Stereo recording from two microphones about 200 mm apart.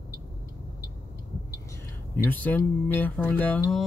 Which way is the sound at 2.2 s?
10° left (ahead or behind).